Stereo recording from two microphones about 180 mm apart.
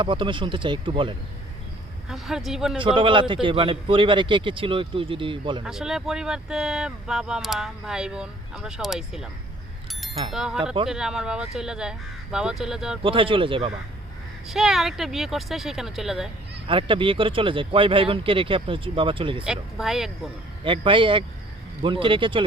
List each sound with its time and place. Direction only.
0.0 s a man's voice: 25° right (ahead or behind)
2.0 s speech: centre (ahead or behind)
2.7 s a man's voice: 30° right (ahead or behind)
5.6 s speech: 5° right (ahead or behind)
10.3 s speech: centre (ahead or behind)
13.0 s a man's voice: 30° right (ahead or behind)
14.4 s speech: centre (ahead or behind)
16.6 s a man's voice: 30° right (ahead or behind)
19.5 s speech: centre (ahead or behind)
20.7 s a man's voice: 30° right (ahead or behind)